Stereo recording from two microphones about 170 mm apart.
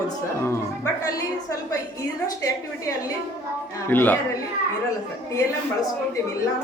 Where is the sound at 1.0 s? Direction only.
20° left (ahead or behind).